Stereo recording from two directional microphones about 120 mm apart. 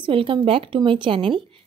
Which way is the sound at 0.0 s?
45° right (ahead or behind).